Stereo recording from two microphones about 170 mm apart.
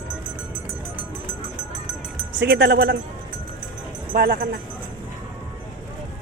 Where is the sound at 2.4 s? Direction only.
80° right.